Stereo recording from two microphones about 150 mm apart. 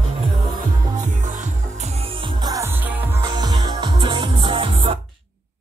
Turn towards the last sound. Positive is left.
turn(degrees=-35)  # may be behind; listen again after turning